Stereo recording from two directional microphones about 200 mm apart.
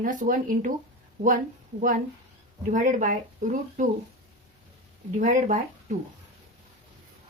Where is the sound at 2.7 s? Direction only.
40° right (ahead or behind).